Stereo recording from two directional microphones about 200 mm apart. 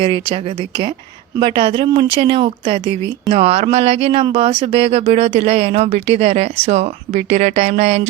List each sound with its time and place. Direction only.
0.0 s speech: 25° right (ahead or behind)